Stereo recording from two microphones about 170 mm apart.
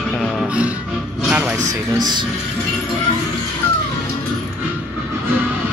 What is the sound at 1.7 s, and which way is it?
Speech, 25° right (ahead or behind).